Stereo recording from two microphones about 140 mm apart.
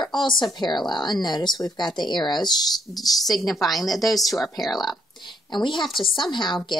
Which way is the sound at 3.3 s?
Centre (ahead or behind).